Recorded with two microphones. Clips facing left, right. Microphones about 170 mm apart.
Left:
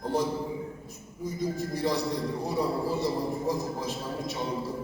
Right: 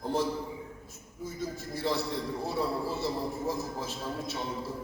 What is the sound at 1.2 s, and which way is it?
Music, 15° left (ahead or behind).